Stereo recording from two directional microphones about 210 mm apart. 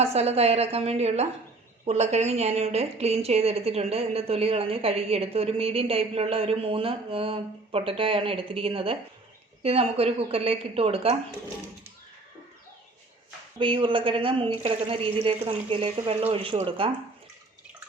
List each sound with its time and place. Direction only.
0.0 s speech: 30° right (ahead or behind)
13.6 s speech: 25° right (ahead or behind)